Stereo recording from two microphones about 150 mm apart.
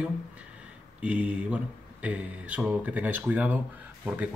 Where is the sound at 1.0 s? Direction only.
10° right (ahead or behind).